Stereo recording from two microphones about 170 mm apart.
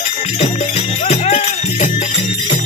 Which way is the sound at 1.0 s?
40° left (ahead or behind).